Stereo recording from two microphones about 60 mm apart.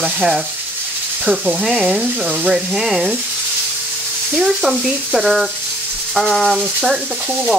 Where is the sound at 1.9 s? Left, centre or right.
Centre.